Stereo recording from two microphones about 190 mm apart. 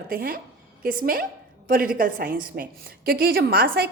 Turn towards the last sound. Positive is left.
turn(degrees=-50)  # may be behind; listen again after turning